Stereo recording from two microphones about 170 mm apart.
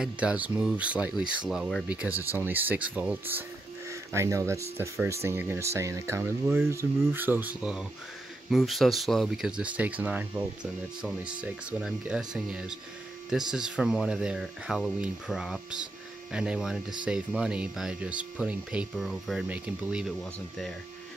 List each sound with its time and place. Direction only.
0.0 s speech: 5° right (ahead or behind)
2.1 s speech: 10° right (ahead or behind)